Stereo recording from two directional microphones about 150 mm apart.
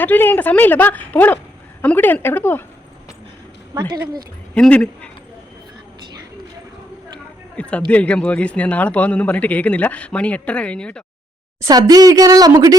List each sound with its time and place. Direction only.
0.0 s a man's voice: 10° left (ahead or behind)
3.8 s a woman's voice: 25° right (ahead or behind)
4.5 s speech: 5° left (ahead or behind)
7.5 s a man's voice: 10° left (ahead or behind)
11.6 s a woman's voice: 25° right (ahead or behind)